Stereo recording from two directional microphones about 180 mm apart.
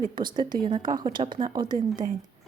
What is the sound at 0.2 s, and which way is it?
A woman's voice, 25° right (ahead or behind).